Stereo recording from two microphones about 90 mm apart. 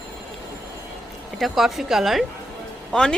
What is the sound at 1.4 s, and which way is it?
Speech, centre (ahead or behind).